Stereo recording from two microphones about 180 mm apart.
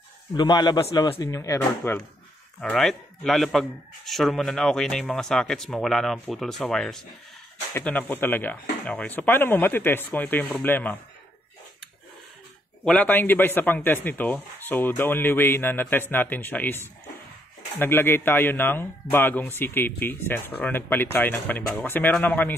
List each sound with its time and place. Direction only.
0.4 s a man's voice: 25° left (ahead or behind)
2.6 s speech: 5° left (ahead or behind)
12.8 s speech: 10° left (ahead or behind)